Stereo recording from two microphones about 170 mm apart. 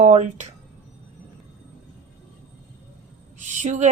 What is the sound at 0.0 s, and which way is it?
Speech, 45° right (ahead or behind).